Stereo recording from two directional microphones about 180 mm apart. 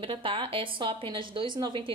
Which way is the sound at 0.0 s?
30° right (ahead or behind).